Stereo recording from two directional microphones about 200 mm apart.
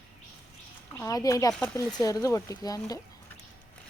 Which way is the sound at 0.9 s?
15° left (ahead or behind).